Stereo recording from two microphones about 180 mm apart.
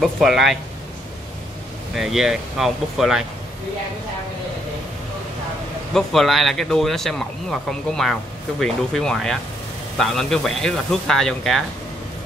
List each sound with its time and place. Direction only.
0.0 s speech: centre (ahead or behind)
2.0 s speech: centre (ahead or behind)
5.9 s speech: centre (ahead or behind)